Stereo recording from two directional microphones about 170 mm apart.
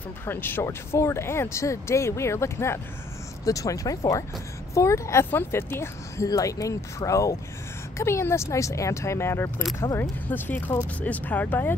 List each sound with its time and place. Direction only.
0.2 s speech: 10° left (ahead or behind)